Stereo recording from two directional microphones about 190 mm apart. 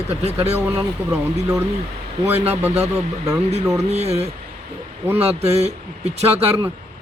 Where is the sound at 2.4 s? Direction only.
35° right (ahead or behind).